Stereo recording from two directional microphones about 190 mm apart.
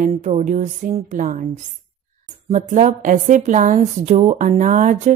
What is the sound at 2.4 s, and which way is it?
Speech, 40° right (ahead or behind).